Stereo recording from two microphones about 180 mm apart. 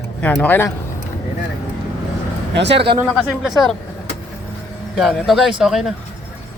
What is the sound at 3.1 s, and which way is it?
Speech, centre (ahead or behind).